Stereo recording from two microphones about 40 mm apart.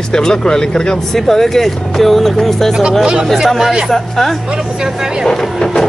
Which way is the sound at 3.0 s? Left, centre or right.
Centre.